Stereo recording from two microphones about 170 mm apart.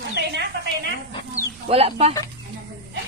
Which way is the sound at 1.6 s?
35° right (ahead or behind).